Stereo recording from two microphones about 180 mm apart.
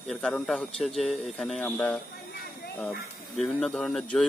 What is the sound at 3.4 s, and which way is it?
Speech, centre (ahead or behind).